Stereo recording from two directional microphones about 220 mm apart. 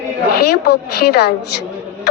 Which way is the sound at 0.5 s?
45° left (ahead or behind).